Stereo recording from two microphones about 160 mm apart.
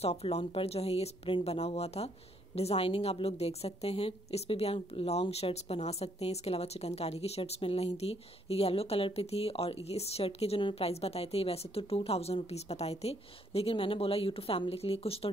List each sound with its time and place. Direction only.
0.0 s a woman's voice: 40° left (ahead or behind)